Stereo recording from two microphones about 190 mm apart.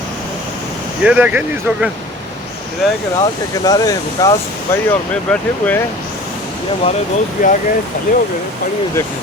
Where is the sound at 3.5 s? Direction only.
20° left (ahead or behind).